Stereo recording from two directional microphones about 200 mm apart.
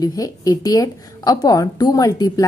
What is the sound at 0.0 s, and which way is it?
A woman's voice, 20° left (ahead or behind).